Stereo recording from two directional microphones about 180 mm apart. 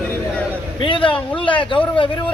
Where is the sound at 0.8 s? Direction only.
30° left (ahead or behind).